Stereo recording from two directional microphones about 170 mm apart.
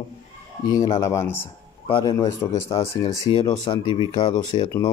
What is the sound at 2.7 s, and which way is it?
Speech, 35° left (ahead or behind).